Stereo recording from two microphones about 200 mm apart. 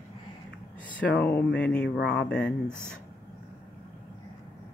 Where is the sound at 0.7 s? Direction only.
5° left (ahead or behind).